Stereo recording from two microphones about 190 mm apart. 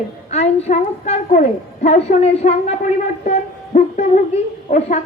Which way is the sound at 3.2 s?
40° left (ahead or behind).